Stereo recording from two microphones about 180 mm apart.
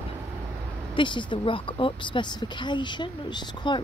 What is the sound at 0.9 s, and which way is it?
Speech, 25° left (ahead or behind).